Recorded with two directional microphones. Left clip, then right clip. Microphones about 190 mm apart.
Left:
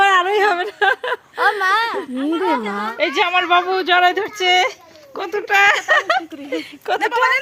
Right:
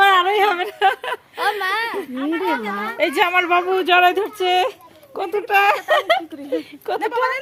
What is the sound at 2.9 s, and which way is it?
Speech, 5° left (ahead or behind).